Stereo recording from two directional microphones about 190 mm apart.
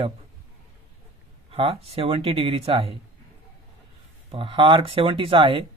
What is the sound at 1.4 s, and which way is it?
Speech, 30° right (ahead or behind).